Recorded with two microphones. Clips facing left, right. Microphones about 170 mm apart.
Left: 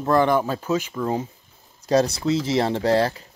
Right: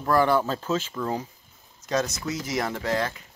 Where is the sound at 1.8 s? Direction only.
35° left (ahead or behind).